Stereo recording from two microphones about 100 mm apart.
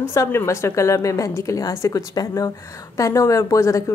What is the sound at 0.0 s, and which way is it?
A woman's voice, 25° left (ahead or behind).